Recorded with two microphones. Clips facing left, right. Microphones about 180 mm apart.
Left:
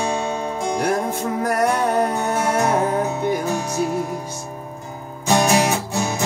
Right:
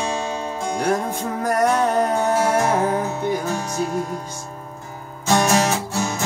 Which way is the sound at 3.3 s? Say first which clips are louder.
Left 2 dB; 10° left (ahead or behind).